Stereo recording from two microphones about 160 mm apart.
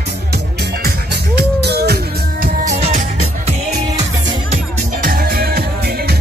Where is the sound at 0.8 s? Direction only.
90° right.